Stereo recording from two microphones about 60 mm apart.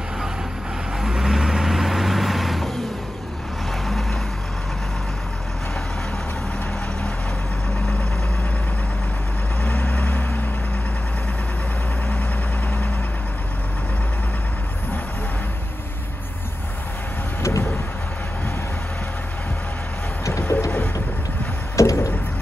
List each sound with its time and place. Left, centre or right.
1.0 s vehicle: centre
9.6 s vehicle: left
17.4 s vehicle: left
20.2 s bird: left
21.8 s a sound: left